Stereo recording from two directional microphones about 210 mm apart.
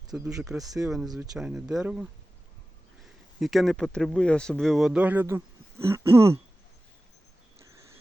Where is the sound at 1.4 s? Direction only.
5° right (ahead or behind).